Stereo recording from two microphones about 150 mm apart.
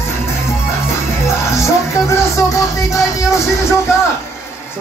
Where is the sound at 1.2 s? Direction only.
20° left (ahead or behind).